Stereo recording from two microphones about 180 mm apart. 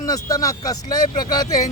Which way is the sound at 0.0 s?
20° left (ahead or behind).